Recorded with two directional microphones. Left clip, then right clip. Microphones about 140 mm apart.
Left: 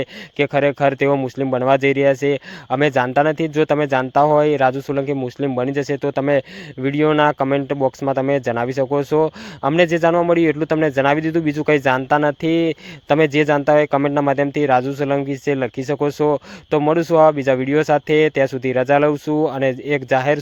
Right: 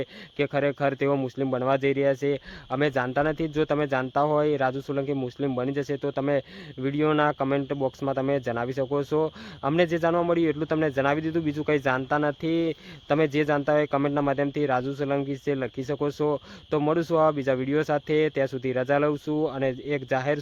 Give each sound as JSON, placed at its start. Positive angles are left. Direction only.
{"t": 0.0, "sound": "speech", "side_deg": 35}